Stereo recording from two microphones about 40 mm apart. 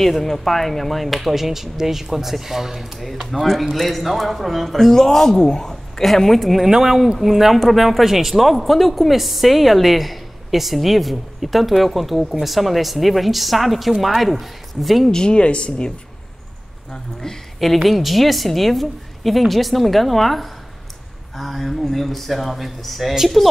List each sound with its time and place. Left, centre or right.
0.0 s speech: centre
15.0 s speech: left
16.9 s speech: centre
17.8 s speech: centre